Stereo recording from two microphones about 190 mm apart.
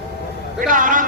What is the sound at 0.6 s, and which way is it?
Speech, 45° right (ahead or behind).